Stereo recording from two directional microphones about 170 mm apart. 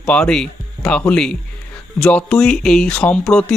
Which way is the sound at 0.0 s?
5° left (ahead or behind).